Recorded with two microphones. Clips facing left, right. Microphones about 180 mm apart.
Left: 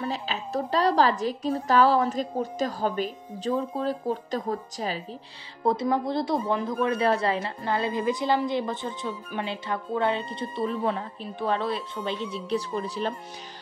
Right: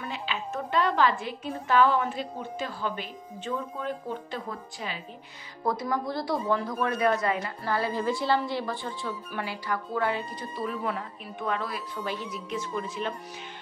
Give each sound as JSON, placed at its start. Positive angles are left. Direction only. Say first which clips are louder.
{"t": 0.0, "sound": "a woman's voice", "louder": "left 3 dB", "side_deg": 35}
{"t": 5.7, "sound": "a woman's voice", "louder": "left 4 dB", "side_deg": 25}